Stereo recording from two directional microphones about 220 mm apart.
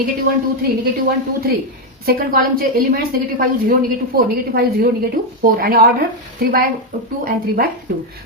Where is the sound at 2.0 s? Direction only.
40° right (ahead or behind).